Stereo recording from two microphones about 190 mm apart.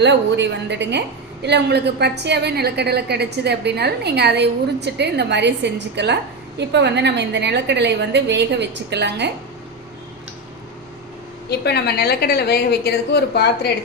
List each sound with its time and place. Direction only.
0.0 s a woman's voice: 65° right (ahead or behind)
11.4 s a woman's voice: 60° left (ahead or behind)